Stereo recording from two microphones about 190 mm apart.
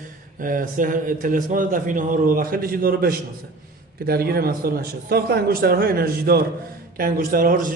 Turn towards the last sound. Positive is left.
turn(degrees=-45)  # may be behind; listen again after turning